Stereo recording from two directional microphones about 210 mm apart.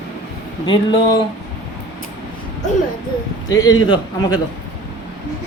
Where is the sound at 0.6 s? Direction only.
20° left (ahead or behind).